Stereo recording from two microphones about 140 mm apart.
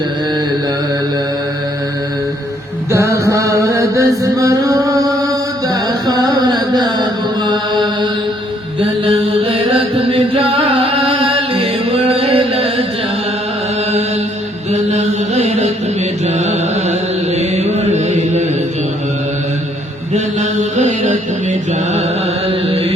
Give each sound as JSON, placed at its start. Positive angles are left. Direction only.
{"t": 2.9, "sound": "chant", "side_deg": -20}
{"t": 8.8, "sound": "mantra", "side_deg": -40}
{"t": 10.1, "sound": "music", "side_deg": -40}
{"t": 14.7, "sound": "mantra", "side_deg": -55}
{"t": 20.1, "sound": "mantra", "side_deg": -55}
{"t": 22.4, "sound": "carnatic music", "side_deg": -40}